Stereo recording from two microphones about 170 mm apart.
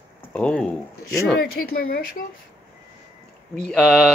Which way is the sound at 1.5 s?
55° left (ahead or behind).